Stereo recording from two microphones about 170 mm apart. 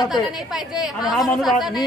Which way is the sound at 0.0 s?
Centre (ahead or behind).